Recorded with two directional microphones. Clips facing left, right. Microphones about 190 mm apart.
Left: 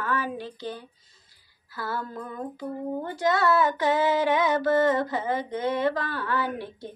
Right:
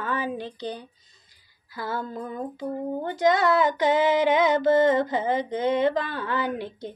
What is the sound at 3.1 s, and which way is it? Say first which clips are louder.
Female singing: right 3 dB; 20° right (ahead or behind).